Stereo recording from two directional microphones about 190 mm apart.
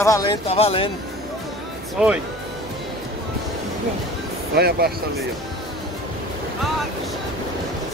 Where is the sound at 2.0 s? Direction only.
Centre (ahead or behind).